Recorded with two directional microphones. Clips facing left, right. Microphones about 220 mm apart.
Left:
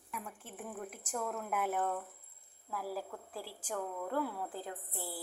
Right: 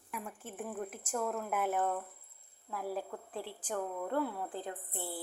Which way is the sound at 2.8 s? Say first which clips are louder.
Right 3 dB; 25° right (ahead or behind).